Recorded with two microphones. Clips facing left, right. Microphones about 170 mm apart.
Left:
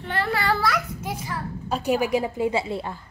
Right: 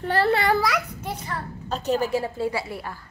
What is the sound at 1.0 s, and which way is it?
A woman's voice, 5° left (ahead or behind).